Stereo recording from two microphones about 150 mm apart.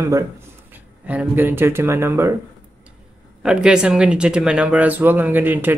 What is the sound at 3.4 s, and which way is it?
Speech, 5° right (ahead or behind).